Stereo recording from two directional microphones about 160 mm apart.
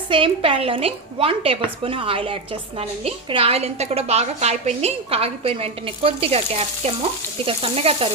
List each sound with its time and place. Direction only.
0.1 s a woman's voice: 35° right (ahead or behind)